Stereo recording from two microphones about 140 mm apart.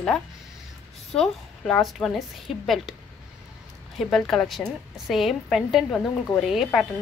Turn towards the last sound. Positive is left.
turn(degrees=0)  # may be behind; listen again after turning